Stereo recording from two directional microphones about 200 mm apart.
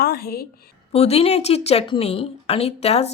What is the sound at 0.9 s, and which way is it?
A woman's voice, 30° left (ahead or behind).